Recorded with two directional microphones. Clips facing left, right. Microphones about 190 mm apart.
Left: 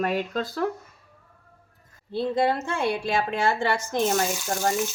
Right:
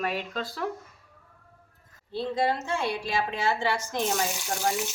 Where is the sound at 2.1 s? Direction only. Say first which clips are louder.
Left 4 dB; 55° left (ahead or behind).